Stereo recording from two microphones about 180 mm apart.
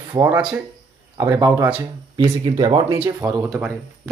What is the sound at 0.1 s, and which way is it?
Speech, 20° right (ahead or behind).